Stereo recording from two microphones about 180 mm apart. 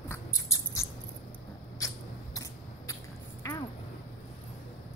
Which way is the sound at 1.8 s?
15° left (ahead or behind).